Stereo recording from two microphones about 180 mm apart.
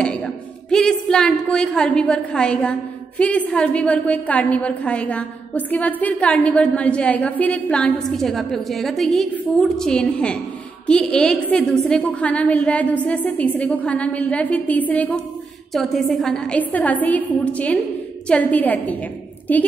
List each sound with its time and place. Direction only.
0.0 s a woman's voice: 5° left (ahead or behind)